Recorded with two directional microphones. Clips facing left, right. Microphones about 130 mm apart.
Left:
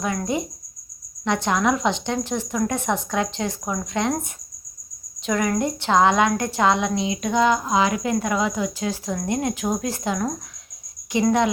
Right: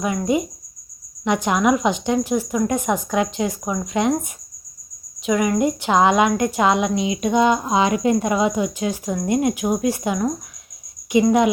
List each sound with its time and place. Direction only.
0.0 s a woman's voice: 15° right (ahead or behind)